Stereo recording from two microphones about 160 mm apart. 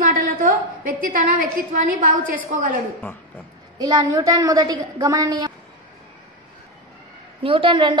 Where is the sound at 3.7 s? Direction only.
25° right (ahead or behind).